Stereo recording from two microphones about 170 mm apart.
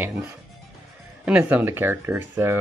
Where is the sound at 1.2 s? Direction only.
10° right (ahead or behind).